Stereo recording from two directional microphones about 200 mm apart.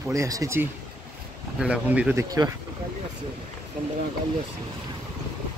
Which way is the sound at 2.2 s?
20° right (ahead or behind).